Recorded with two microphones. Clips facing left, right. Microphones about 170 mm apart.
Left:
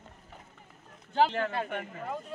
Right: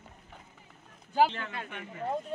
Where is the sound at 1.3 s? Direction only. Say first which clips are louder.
Left 8 dB; 45° left (ahead or behind).